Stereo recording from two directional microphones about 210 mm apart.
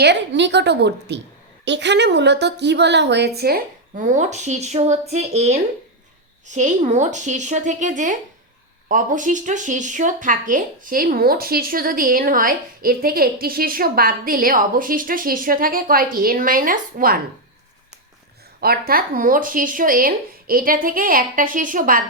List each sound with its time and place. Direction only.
0.0 s a woman's voice: 55° right (ahead or behind)
18.6 s speech: 45° right (ahead or behind)